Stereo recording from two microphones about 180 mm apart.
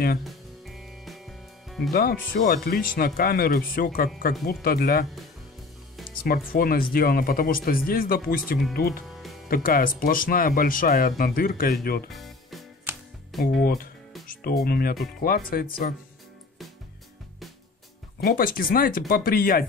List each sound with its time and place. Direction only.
0.2 s music: centre (ahead or behind)
1.9 s speech: 55° left (ahead or behind)
6.2 s speech: 55° left (ahead or behind)
9.0 s music: centre (ahead or behind)
9.5 s speech: 55° left (ahead or behind)
12.1 s music: centre (ahead or behind)
13.3 s speech: centre (ahead or behind)
13.6 s speech: 55° left (ahead or behind)
18.2 s speech: 50° left (ahead or behind)